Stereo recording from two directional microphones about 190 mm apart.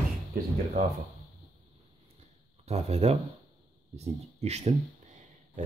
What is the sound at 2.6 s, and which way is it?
Speech, 35° right (ahead or behind).